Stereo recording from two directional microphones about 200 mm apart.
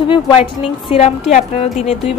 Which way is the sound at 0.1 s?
25° left (ahead or behind).